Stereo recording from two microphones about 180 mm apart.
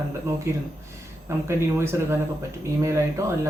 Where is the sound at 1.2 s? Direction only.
15° right (ahead or behind).